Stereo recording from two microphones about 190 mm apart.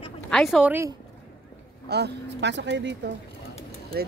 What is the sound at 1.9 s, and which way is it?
Speech, 65° right (ahead or behind).